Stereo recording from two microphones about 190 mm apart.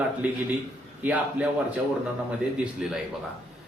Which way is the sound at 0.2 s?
5° right (ahead or behind).